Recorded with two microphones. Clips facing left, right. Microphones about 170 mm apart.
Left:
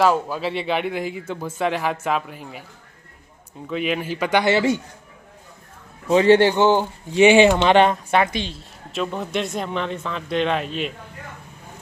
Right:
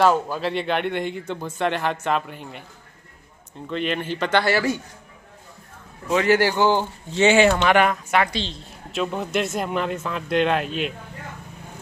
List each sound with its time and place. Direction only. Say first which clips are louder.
0.0 s speech: even; centre (ahead or behind)
3.6 s speech: left 1 dB; 5° left (ahead or behind); by 4.8 s 20° left (ahead or behind)
6.0 s speech: left 5 dB; 30° left (ahead or behind); by 7.5 s 15° left (ahead or behind)
7.5 s speech: left 3 dB; 25° left (ahead or behind)
8.9 s speech: right 1 dB; centre (ahead or behind)